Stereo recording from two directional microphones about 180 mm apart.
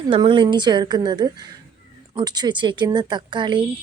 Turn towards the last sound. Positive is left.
turn(degrees=-25)  # may be behind; listen again after turning